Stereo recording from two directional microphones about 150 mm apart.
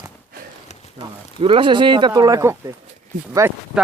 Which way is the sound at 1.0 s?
35° right (ahead or behind).